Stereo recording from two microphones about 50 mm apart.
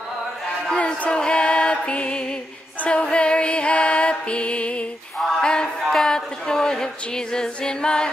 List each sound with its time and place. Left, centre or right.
0.7 s music: centre
5.9 s female singing: centre